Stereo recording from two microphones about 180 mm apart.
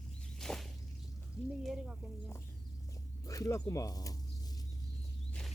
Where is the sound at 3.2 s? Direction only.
20° left (ahead or behind).